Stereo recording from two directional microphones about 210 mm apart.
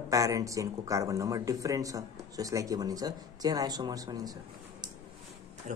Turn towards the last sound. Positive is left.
turn(degrees=-35)  # may be behind; listen again after turning